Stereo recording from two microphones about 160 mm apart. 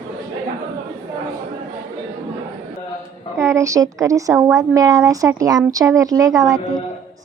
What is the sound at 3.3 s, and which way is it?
A woman's voice, 15° right (ahead or behind).